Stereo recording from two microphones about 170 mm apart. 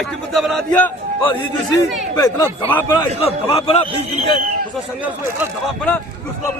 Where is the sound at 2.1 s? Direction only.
20° left (ahead or behind).